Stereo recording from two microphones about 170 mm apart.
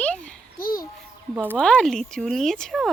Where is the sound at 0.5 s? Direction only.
60° left (ahead or behind).